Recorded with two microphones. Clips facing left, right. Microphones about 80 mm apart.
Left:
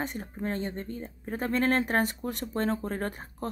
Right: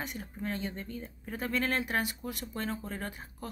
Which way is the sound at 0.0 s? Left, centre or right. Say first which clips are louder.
Left 5 dB; left.